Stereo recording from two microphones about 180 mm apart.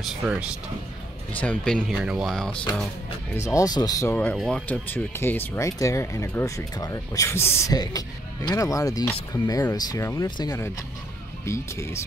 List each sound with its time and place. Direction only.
0.2 s speech: 5° right (ahead or behind)
1.3 s speech: 10° left (ahead or behind)
3.3 s speech: 15° left (ahead or behind)
4.1 s speech: 10° left (ahead or behind)